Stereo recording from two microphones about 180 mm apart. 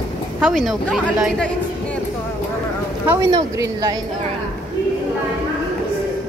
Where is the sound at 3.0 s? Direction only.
20° right (ahead or behind).